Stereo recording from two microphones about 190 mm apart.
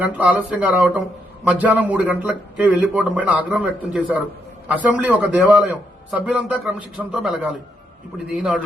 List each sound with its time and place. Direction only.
0.0 s a man's voice: 10° right (ahead or behind)